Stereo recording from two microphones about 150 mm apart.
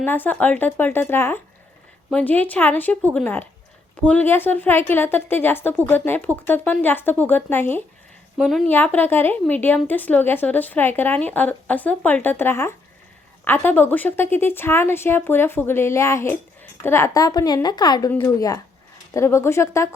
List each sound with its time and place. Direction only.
0.0 s a woman's voice: 15° left (ahead or behind)
8.4 s a woman's voice: centre (ahead or behind)
8.7 s a woman's voice: 10° left (ahead or behind)